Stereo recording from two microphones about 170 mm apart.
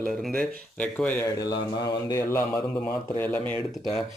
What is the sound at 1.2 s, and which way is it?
Speech, 20° left (ahead or behind).